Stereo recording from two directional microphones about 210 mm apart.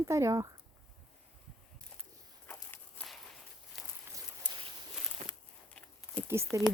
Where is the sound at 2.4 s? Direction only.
10° left (ahead or behind).